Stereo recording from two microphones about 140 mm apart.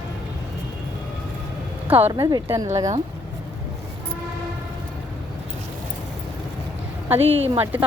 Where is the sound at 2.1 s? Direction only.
30° right (ahead or behind).